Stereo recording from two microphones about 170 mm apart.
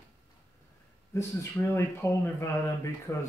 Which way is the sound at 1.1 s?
15° left (ahead or behind).